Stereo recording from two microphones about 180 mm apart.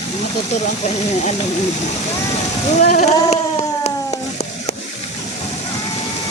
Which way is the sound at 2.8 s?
45° left (ahead or behind).